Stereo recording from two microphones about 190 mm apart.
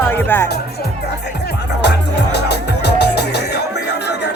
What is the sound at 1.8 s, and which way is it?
Music, 60° left (ahead or behind).